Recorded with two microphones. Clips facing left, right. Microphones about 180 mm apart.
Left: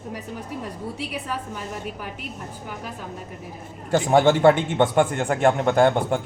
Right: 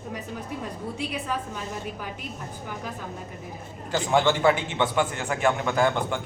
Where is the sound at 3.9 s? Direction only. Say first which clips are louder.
Left 5 dB; 60° left (ahead or behind).